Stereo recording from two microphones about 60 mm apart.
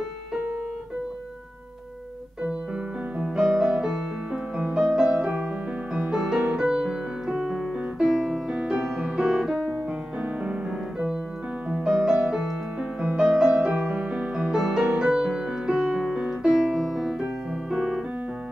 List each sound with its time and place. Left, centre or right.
3.3 s music: centre
6.4 s music: centre
9.8 s music: centre
13.4 s music: centre
14.5 s music: centre
17.0 s piano: centre